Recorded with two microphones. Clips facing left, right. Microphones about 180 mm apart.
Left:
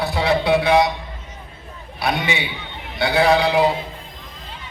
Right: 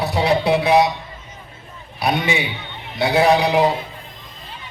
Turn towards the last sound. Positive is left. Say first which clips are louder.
# right 1 dB
turn(degrees=-20)  # may be behind; listen again after turning